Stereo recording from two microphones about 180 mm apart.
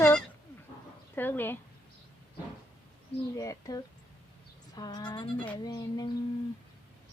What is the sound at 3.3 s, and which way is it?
Speech, 20° left (ahead or behind).